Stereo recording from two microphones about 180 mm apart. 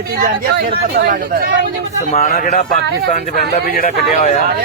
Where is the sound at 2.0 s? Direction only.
50° left (ahead or behind).